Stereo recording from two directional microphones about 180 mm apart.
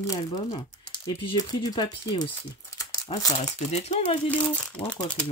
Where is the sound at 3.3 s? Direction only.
35° left (ahead or behind).